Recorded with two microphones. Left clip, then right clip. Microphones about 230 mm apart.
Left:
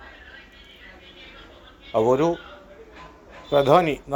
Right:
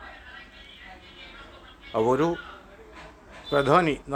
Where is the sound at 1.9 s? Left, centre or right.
Centre.